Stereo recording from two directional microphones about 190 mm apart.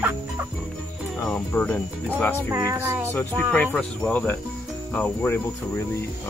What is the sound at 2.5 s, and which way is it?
Music, 15° right (ahead or behind).